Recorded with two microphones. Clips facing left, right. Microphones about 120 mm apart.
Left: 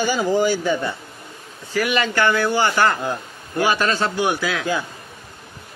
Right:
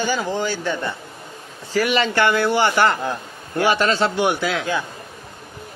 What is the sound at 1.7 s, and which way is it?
Speech, 25° right (ahead or behind).